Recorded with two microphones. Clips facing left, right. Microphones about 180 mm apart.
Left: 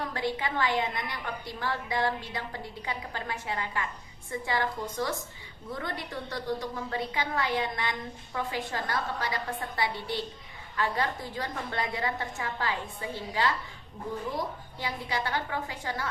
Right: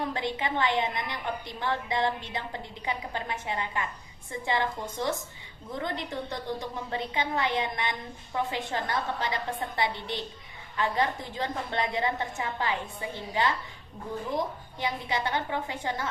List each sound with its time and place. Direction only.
0.1 s a woman's voice: 20° right (ahead or behind)